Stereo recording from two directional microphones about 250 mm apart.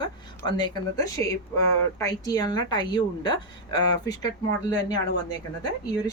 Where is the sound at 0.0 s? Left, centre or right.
Centre.